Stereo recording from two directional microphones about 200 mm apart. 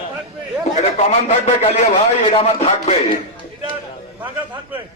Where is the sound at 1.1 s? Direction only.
30° left (ahead or behind).